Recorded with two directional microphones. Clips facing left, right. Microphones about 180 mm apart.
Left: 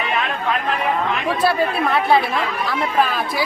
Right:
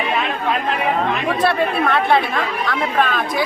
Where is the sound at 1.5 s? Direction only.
5° left (ahead or behind).